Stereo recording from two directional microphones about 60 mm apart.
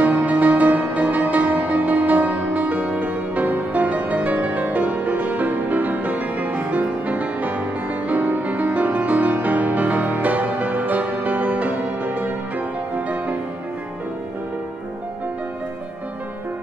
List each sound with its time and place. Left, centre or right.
0.0 s music: right